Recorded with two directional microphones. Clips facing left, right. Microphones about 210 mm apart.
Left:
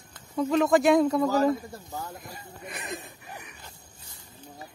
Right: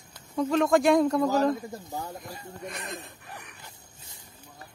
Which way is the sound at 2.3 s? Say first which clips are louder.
Right 3 dB; 5° left (ahead or behind).